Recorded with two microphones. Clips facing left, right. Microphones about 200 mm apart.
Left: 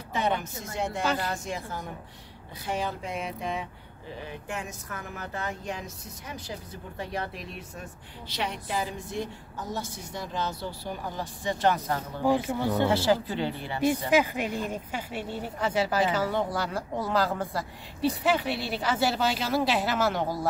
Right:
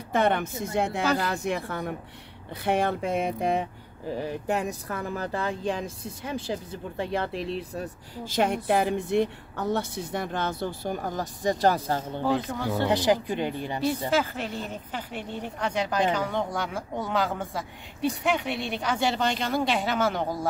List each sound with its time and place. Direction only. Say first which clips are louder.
0.1 s speech: right 5 dB; 55° right (ahead or behind)
4.2 s a woman's voice: right 8 dB; 40° right (ahead or behind)
12.3 s speech: left 2 dB; 15° left (ahead or behind)
12.8 s speech: right 2 dB; 15° right (ahead or behind)
14.1 s speech: left 2 dB; 15° left (ahead or behind)